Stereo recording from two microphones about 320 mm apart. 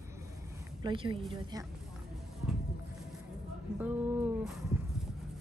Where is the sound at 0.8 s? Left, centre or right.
Centre.